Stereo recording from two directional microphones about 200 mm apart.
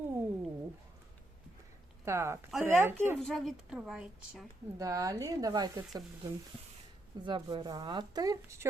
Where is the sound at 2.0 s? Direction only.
15° right (ahead or behind).